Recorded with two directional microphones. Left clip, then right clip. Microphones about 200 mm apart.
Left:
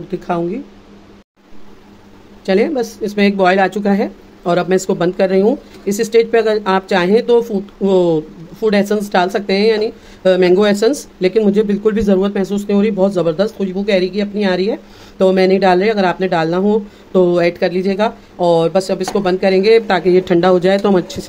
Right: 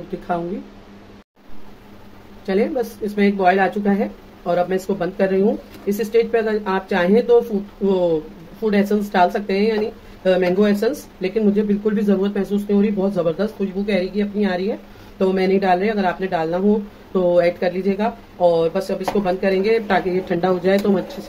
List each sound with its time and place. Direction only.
2.4 s speech: 50° left (ahead or behind)